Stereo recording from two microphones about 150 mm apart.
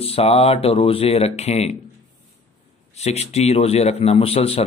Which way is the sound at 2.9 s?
45° left (ahead or behind).